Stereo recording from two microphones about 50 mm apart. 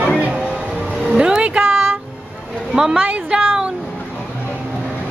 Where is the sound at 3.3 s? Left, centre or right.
Centre.